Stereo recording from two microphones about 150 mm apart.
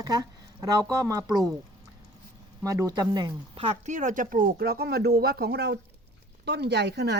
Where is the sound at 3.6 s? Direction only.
45° right (ahead or behind); by 7.1 s 90° right.